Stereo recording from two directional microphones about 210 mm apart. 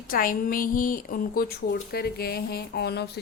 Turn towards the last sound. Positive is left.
turn(degrees=50)  # may be behind; listen again after turning